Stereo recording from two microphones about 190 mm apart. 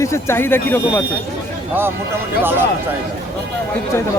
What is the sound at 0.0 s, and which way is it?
Speech, 15° left (ahead or behind).